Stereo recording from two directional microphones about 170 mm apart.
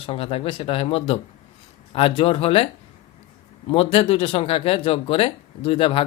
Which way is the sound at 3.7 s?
35° left (ahead or behind).